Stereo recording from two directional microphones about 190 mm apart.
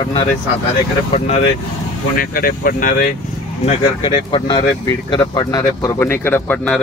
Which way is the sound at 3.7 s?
25° left (ahead or behind).